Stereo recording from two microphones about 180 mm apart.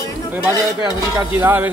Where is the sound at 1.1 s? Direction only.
10° right (ahead or behind).